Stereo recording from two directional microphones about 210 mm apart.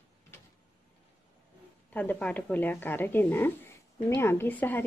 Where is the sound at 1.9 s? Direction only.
5° left (ahead or behind).